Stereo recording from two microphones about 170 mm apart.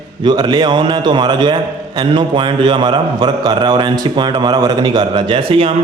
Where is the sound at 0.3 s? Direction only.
25° right (ahead or behind).